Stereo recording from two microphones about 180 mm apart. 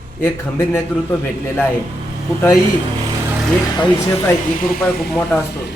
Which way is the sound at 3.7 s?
20° left (ahead or behind).